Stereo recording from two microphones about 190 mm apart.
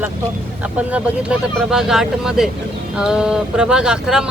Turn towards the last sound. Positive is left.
turn(degrees=-5)  # may be behind; listen again after turning